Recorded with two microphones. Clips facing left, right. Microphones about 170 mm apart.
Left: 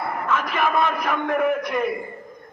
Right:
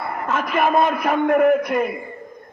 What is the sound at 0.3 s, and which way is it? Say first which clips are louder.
A man's voice: right 4 dB; 40° right (ahead or behind).